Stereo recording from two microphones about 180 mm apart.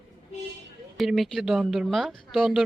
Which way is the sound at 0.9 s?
Centre (ahead or behind).